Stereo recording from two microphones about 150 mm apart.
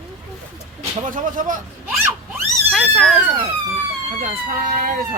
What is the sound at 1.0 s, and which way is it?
Speech, 60° right (ahead or behind).